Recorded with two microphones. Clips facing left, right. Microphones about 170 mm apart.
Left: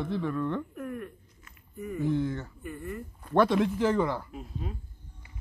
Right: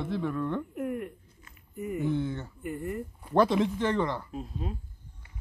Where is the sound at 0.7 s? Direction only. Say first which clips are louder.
Right 4 dB; 20° right (ahead or behind).